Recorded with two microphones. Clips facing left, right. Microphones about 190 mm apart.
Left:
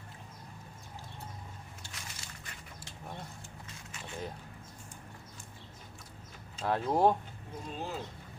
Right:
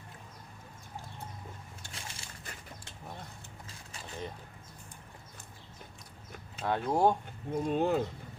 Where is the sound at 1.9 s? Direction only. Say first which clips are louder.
Right 4 dB; 30° right (ahead or behind).